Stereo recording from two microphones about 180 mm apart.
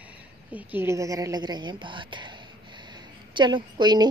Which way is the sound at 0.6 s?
10° right (ahead or behind).